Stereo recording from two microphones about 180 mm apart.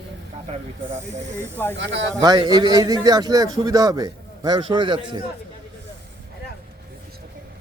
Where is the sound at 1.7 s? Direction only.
80° right.